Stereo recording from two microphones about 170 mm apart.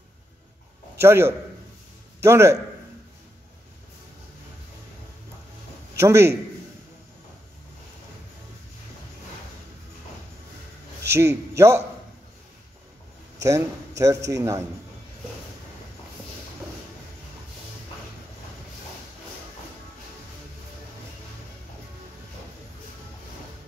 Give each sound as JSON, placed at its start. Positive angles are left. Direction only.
{"t": 0.9, "sound": "a man's voice", "side_deg": -15}
{"t": 5.9, "sound": "a man's voice", "side_deg": -15}
{"t": 11.1, "sound": "a man's voice", "side_deg": -15}
{"t": 13.4, "sound": "a man's voice", "side_deg": -20}